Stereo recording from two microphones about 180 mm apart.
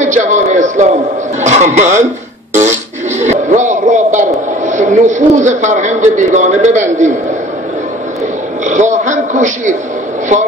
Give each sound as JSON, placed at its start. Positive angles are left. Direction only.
{"t": 0.0, "sound": "a sound", "side_deg": -45}
{"t": 1.4, "sound": "speech", "side_deg": -40}
{"t": 2.5, "sound": "music", "side_deg": -40}
{"t": 4.6, "sound": "a man's voice", "side_deg": -40}
{"t": 8.6, "sound": "a man's voice", "side_deg": -40}